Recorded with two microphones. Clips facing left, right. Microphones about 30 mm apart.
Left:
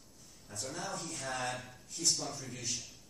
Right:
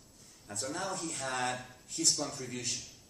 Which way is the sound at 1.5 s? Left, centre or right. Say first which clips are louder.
Right 2 dB; centre.